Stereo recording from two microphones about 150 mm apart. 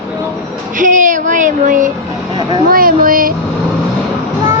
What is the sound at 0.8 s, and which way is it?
Speech, 60° right (ahead or behind).